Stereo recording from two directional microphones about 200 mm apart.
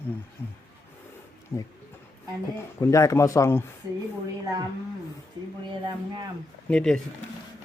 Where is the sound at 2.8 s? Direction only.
15° left (ahead or behind).